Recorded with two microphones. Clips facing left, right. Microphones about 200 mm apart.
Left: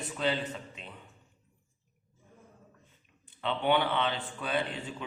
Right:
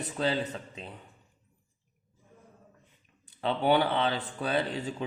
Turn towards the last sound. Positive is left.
turn(degrees=-35)  # may be behind; listen again after turning